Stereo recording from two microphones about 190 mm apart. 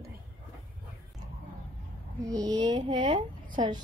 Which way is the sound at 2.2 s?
20° right (ahead or behind).